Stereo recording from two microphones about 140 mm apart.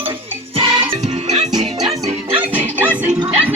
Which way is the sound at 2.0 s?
40° right (ahead or behind).